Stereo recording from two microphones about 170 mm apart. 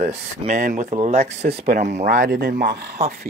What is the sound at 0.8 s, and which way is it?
Speech, 35° right (ahead or behind).